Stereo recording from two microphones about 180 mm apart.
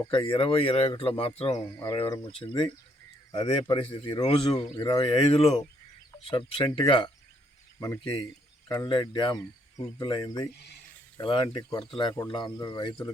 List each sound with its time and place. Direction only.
0.1 s speech: 25° left (ahead or behind)
8.9 s speech: 25° left (ahead or behind)